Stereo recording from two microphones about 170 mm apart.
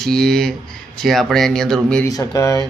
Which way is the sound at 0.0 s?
5° left (ahead or behind).